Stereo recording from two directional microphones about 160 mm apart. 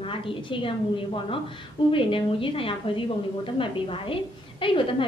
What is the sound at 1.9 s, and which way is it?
A woman's voice, 35° left (ahead or behind).